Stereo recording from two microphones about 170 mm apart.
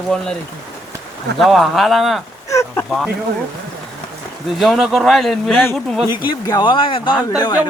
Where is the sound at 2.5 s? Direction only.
15° left (ahead or behind).